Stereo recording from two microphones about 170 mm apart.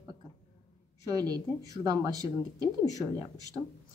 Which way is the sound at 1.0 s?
20° right (ahead or behind).